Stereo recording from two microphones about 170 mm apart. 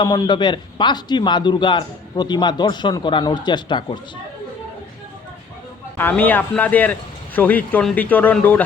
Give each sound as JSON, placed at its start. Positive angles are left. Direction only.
{"t": 0.0, "sound": "a man's voice", "side_deg": 25}
{"t": 6.0, "sound": "speech", "side_deg": 10}